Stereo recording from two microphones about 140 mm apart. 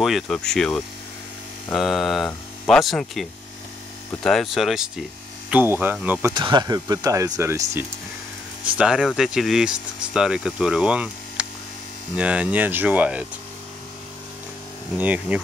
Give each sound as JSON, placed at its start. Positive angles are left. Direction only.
{"t": 0.0, "sound": "speech", "side_deg": 0}
{"t": 5.5, "sound": "speech", "side_deg": -15}
{"t": 6.3, "sound": "speech", "side_deg": -30}
{"t": 8.7, "sound": "speech", "side_deg": -5}
{"t": 15.0, "sound": "speech", "side_deg": -10}